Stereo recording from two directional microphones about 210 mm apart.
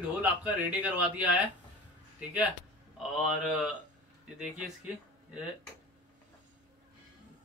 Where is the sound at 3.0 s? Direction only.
5° right (ahead or behind).